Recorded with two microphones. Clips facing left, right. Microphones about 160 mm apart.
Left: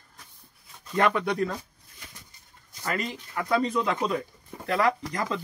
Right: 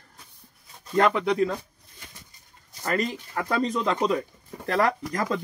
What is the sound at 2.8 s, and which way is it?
A man's voice, 45° right (ahead or behind).